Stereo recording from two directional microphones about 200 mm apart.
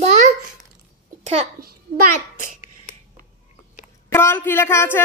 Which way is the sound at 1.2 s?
35° right (ahead or behind).